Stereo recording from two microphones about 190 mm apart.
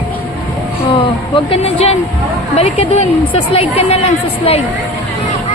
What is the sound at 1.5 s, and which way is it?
Speech, 35° left (ahead or behind).